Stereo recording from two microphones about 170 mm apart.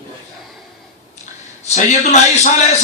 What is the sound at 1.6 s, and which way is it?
Speech, 45° left (ahead or behind).